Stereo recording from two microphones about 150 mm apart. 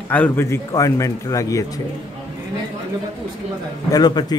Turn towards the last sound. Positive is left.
turn(degrees=25)  # may be behind; listen again after turning